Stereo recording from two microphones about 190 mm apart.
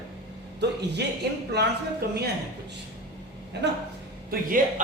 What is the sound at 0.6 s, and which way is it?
Speech, 60° right (ahead or behind).